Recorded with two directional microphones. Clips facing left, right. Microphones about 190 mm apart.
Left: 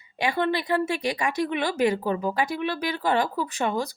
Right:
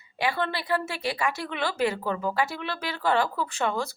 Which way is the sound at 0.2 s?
15° left (ahead or behind).